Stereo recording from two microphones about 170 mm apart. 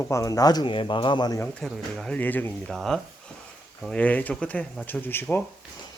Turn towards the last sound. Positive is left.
turn(degrees=10)  # may be behind; listen again after turning